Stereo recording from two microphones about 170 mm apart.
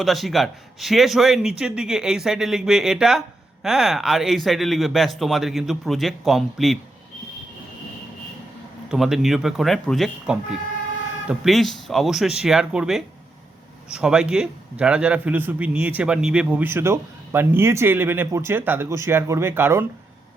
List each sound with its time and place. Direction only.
0.0 s a man's voice: centre (ahead or behind)
8.9 s a man's voice: centre (ahead or behind)